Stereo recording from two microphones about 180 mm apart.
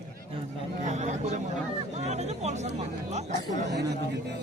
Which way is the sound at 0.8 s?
40° right (ahead or behind).